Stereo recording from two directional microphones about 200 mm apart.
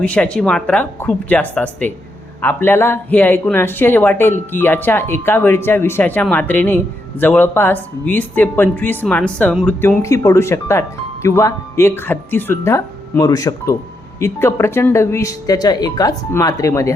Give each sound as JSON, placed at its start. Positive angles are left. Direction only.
{"t": 0.0, "sound": "speech", "side_deg": 5}